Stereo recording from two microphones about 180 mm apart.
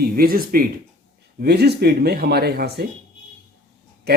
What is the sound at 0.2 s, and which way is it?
Speech, 55° right (ahead or behind).